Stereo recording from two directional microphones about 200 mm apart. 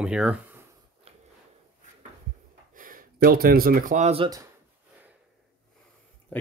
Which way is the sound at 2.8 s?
45° right (ahead or behind).